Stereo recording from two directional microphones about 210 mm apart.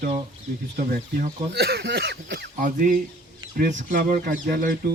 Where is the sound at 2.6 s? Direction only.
40° right (ahead or behind).